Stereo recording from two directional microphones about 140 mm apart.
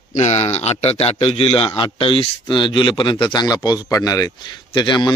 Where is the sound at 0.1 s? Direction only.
55° left (ahead or behind).